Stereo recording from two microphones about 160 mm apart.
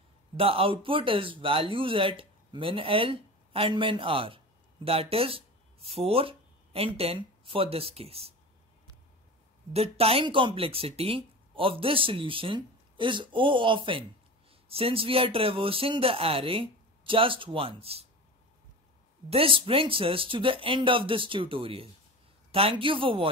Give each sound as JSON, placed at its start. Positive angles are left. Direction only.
{"t": 0.4, "sound": "speech", "side_deg": -35}
{"t": 9.7, "sound": "speech", "side_deg": -40}
{"t": 19.2, "sound": "speech", "side_deg": -35}